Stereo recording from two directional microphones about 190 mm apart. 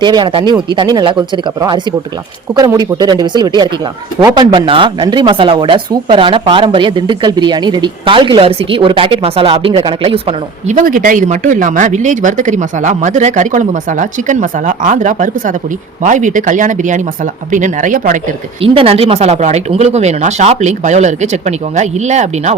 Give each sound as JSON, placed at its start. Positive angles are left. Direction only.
{"t": 0.0, "sound": "speech", "side_deg": -25}
{"t": 2.6, "sound": "speech", "side_deg": -20}
{"t": 10.8, "sound": "speech", "side_deg": -45}
{"t": 18.6, "sound": "speech", "side_deg": -30}